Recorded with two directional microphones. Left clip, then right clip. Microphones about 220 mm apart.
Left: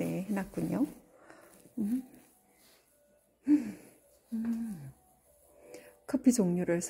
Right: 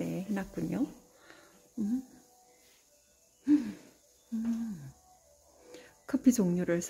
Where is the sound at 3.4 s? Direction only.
15° right (ahead or behind).